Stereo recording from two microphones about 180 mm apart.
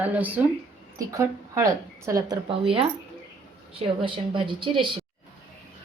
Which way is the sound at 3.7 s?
30° right (ahead or behind).